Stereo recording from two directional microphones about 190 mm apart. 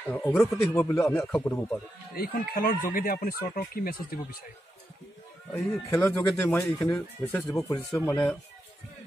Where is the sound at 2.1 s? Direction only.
50° left (ahead or behind).